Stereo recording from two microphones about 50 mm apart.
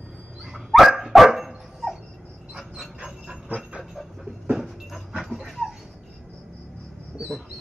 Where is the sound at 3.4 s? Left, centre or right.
Right.